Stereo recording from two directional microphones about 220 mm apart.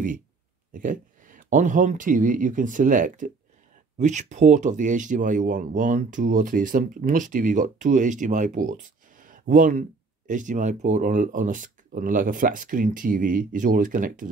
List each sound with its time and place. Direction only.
0.7 s speech: 35° right (ahead or behind)